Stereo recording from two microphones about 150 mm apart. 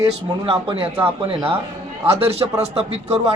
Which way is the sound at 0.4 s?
35° right (ahead or behind).